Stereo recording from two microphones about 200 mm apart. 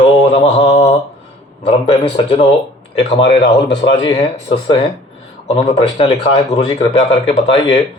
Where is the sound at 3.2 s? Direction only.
60° left (ahead or behind).